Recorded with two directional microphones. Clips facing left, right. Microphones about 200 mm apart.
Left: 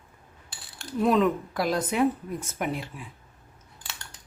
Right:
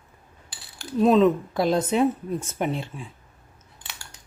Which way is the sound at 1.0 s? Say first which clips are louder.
Right 5 dB; 25° right (ahead or behind).